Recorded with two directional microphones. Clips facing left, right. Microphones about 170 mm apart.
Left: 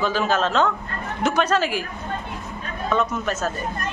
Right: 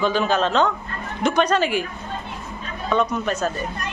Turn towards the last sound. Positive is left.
turn(degrees=5)  # may be behind; listen again after turning